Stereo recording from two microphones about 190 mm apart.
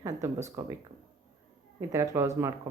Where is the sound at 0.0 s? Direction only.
15° right (ahead or behind).